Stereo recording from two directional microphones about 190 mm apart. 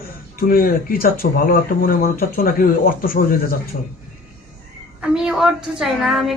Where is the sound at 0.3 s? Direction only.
50° left (ahead or behind).